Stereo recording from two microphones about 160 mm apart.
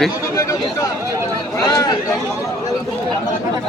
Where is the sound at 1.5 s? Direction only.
20° left (ahead or behind).